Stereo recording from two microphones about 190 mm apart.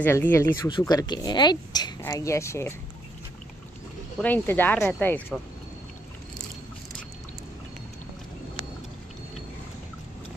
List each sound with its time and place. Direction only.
0.0 s speech: 10° left (ahead or behind)
4.2 s speech: 10° left (ahead or behind)